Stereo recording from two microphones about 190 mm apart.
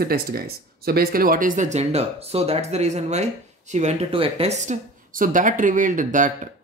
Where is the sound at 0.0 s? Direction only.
55° right (ahead or behind).